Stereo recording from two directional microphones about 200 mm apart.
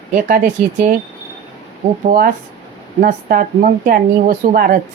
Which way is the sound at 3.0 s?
40° right (ahead or behind).